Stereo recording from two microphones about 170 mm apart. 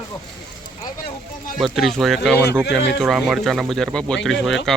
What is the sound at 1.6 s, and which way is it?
Speech, centre (ahead or behind).